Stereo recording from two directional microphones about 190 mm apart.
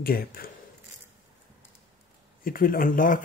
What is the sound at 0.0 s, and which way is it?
Speech, 50° left (ahead or behind).